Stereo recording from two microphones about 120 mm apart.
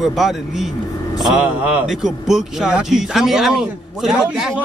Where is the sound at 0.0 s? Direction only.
Centre (ahead or behind).